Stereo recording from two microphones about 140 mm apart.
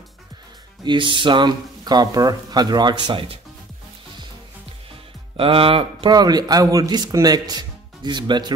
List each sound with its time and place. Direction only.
0.8 s speech: 35° right (ahead or behind)
5.4 s a man's voice: 40° right (ahead or behind)